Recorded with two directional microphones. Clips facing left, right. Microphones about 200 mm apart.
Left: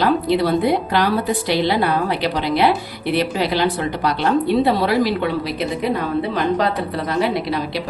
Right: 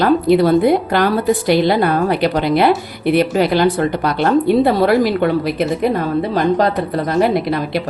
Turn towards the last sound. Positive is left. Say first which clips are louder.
# right 4 dB
turn(degrees=-50)  # may be behind; listen again after turning